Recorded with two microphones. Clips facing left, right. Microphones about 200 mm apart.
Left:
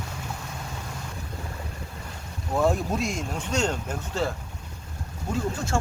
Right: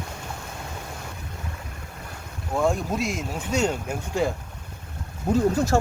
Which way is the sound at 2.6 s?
Centre (ahead or behind).